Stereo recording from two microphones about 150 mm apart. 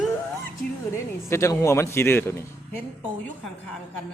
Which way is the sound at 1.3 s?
20° left (ahead or behind).